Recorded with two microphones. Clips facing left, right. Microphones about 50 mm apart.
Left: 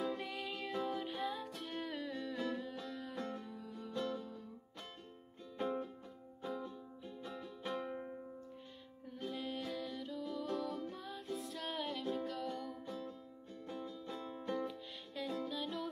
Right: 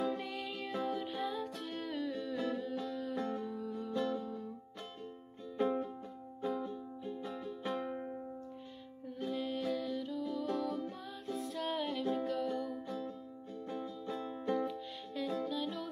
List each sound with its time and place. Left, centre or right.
0.0 s music: centre
3.2 s music: centre
5.6 s music: right
6.4 s music: centre
7.2 s music: centre
9.2 s music: centre